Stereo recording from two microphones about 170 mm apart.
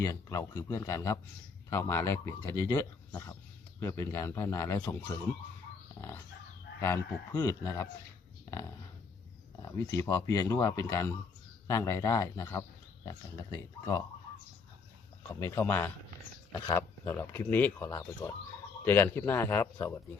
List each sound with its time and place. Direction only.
0.0 s speech: 20° left (ahead or behind)
6.7 s speech: 15° left (ahead or behind)
9.6 s speech: 20° left (ahead or behind)
15.3 s speech: 20° left (ahead or behind)